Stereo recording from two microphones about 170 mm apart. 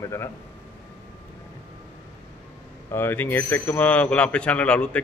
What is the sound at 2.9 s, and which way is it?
A man's voice, 10° left (ahead or behind).